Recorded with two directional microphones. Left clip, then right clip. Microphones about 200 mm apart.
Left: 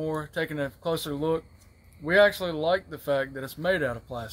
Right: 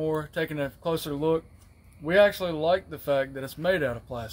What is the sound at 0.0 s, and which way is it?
Speech, centre (ahead or behind).